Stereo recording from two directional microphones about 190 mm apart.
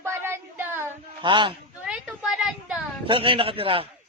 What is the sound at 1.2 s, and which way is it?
Speech, 25° right (ahead or behind).